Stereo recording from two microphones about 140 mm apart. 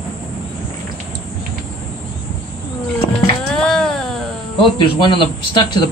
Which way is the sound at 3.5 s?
5° left (ahead or behind).